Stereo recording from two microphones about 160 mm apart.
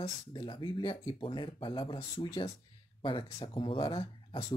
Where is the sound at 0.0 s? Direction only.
30° left (ahead or behind).